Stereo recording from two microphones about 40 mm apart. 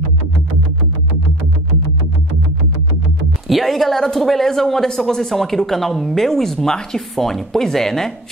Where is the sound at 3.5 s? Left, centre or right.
Centre.